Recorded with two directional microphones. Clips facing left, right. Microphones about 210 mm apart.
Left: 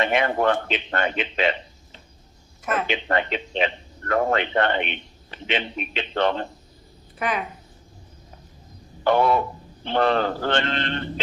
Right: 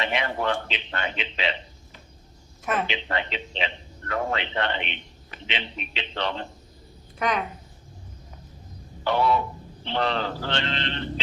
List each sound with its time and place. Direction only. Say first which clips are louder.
0.0 s a man's voice: left 6 dB; 50° left (ahead or behind)
2.8 s a man's voice: left 5 dB; 50° left (ahead or behind)
7.2 s a woman's voice: even; 5° left (ahead or behind)
9.0 s a man's voice: left 4 dB; 50° left (ahead or behind)